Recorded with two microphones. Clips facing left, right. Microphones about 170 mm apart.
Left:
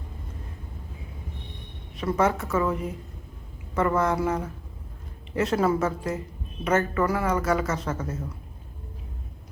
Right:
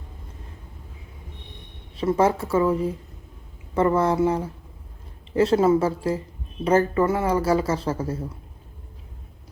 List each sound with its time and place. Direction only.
2.0 s a woman's voice: 30° right (ahead or behind)